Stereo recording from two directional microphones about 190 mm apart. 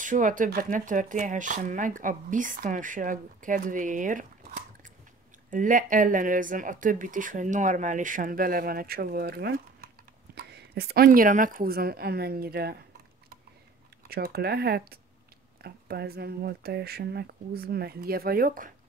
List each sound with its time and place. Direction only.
0.0 s speech: 45° right (ahead or behind)
14.0 s speech: 55° right (ahead or behind)